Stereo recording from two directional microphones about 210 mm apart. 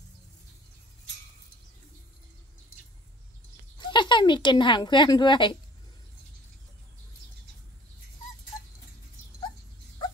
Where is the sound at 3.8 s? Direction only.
20° left (ahead or behind).